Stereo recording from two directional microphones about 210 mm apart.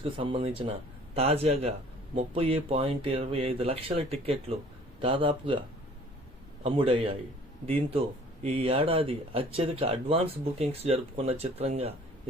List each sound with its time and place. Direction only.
0.0 s speech: 25° right (ahead or behind)
6.6 s speech: 25° right (ahead or behind)